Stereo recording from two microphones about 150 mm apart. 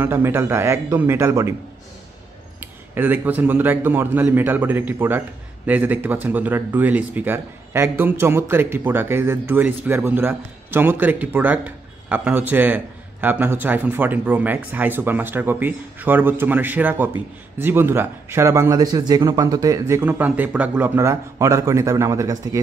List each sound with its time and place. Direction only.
0.0 s speech: 15° right (ahead or behind)
2.6 s speech: 15° right (ahead or behind)